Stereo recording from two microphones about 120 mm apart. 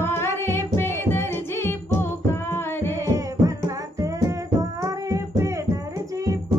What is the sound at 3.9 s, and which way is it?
Music, 30° right (ahead or behind).